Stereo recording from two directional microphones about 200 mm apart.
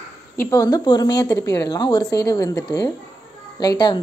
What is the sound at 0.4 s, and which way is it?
A woman's voice, 15° left (ahead or behind).